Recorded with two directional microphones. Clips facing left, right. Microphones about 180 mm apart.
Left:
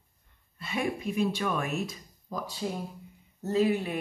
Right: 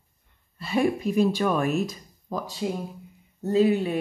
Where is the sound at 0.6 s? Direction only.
35° right (ahead or behind).